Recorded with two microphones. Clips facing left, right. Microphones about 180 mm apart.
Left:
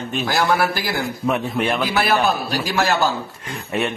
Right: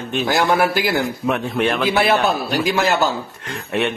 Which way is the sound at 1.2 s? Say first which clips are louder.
Left 1 dB; centre (ahead or behind).